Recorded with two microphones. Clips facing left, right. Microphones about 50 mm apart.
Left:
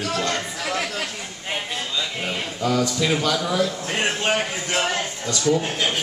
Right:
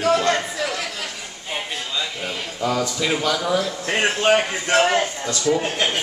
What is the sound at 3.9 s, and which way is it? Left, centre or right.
A man's voice, right.